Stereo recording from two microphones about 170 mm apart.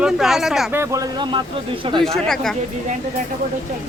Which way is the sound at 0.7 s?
15° right (ahead or behind).